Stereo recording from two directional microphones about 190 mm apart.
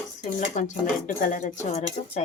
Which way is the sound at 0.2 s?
40° left (ahead or behind).